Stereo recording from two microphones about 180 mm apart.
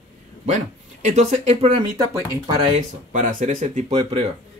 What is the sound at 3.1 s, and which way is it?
Speech, 45° right (ahead or behind).